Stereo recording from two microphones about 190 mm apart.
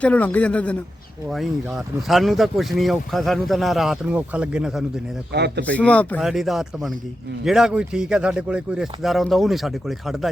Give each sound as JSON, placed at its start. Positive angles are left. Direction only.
{"t": 0.0, "sound": "a man's voice", "side_deg": 10}
{"t": 5.3, "sound": "speech", "side_deg": -60}
{"t": 5.6, "sound": "a man's voice", "side_deg": 5}